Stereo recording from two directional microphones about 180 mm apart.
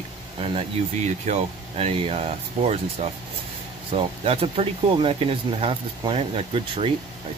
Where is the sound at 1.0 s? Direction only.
40° right (ahead or behind).